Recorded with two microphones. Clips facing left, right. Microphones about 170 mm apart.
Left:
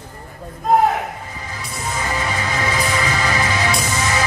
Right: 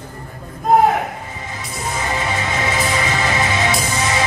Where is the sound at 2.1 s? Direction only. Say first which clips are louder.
Right 1 dB; 25° right (ahead or behind).